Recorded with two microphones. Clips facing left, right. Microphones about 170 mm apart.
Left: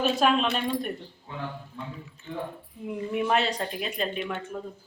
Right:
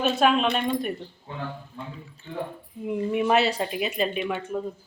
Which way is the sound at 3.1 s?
5° right (ahead or behind).